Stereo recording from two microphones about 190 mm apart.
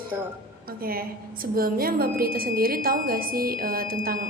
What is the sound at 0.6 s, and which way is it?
A woman's voice, 50° right (ahead or behind).